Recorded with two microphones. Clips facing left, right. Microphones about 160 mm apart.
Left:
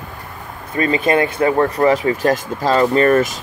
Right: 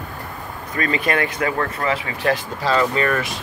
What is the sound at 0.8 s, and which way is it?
Speech, 25° left (ahead or behind).